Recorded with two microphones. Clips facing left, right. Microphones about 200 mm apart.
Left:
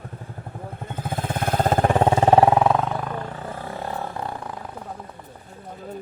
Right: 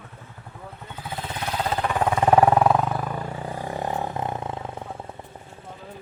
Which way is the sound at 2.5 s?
Centre (ahead or behind).